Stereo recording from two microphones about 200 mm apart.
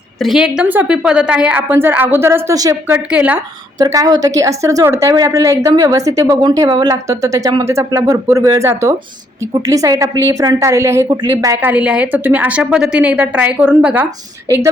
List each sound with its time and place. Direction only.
0.2 s a woman's voice: centre (ahead or behind)